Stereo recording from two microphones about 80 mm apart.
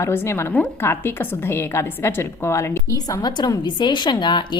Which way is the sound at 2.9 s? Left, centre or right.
Left.